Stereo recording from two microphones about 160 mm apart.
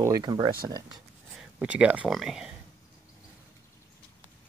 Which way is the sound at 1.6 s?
10° right (ahead or behind).